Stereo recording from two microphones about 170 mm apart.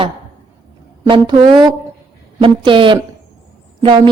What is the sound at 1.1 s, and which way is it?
A woman's voice, 30° right (ahead or behind).